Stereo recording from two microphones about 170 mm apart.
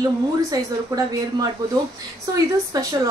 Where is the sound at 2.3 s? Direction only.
20° right (ahead or behind).